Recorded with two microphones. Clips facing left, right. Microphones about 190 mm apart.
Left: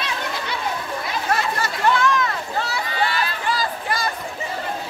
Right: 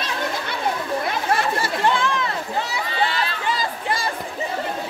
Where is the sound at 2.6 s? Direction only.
20° right (ahead or behind).